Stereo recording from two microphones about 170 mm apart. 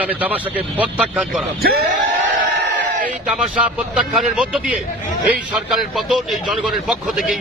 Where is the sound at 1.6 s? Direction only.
65° right (ahead or behind).